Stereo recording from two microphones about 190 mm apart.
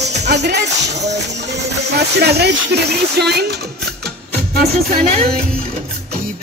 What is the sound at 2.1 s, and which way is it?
Speech, 60° right (ahead or behind).